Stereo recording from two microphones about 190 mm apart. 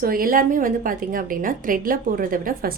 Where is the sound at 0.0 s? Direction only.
50° right (ahead or behind).